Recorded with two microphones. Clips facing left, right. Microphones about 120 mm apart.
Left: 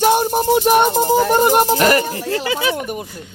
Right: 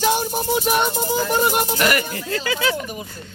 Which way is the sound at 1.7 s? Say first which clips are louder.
Left 5 dB; 35° left (ahead or behind).